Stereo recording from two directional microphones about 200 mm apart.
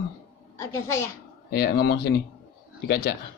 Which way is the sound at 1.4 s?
55° left (ahead or behind).